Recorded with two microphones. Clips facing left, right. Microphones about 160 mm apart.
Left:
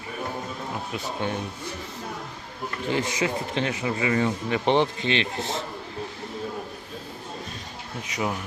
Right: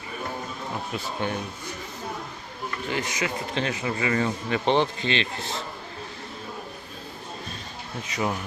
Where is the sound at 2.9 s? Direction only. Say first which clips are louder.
Left 4 dB; 25° left (ahead or behind).